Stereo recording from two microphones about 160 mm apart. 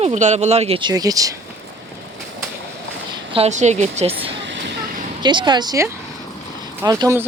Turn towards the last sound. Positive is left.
turn(degrees=-15)  # may be behind; listen again after turning